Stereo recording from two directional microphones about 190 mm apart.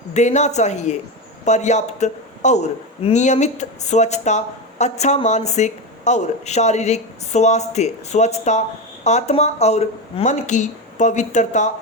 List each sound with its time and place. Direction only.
0.1 s a man's voice: 35° left (ahead or behind)